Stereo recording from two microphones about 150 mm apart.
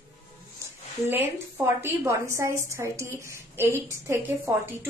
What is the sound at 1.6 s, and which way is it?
A woman's voice, 20° right (ahead or behind).